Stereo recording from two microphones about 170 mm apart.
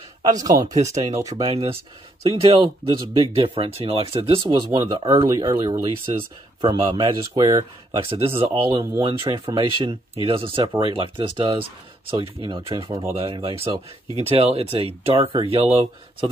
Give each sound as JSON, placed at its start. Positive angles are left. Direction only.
{"t": 0.2, "sound": "speech", "side_deg": -20}
{"t": 1.4, "sound": "speech", "side_deg": -35}